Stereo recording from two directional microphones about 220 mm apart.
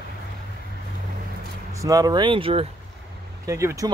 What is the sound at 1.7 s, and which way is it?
Speech, 15° right (ahead or behind).